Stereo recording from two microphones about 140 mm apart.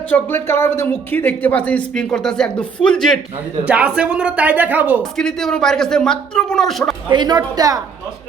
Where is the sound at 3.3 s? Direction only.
10° right (ahead or behind).